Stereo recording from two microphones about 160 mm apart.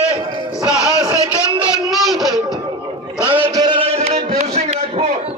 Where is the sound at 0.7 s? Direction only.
25° right (ahead or behind).